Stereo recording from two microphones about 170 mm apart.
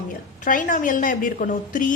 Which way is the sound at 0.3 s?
50° left (ahead or behind).